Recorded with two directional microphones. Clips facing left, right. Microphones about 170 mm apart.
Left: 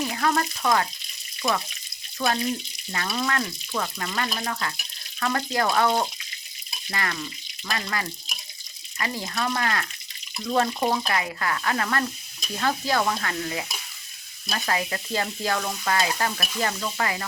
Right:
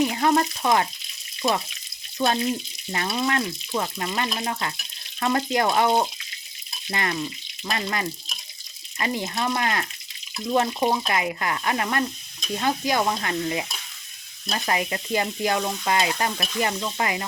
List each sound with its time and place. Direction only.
0.0 s frying: 20° right (ahead or behind)
2.1 s speech: 25° right (ahead or behind)
2.9 s frying: 25° right (ahead or behind)
10.4 s stir: 15° right (ahead or behind)
11.1 s frying: 20° right (ahead or behind)
12.5 s stir: 15° right (ahead or behind)
14.5 s frying: 20° right (ahead or behind)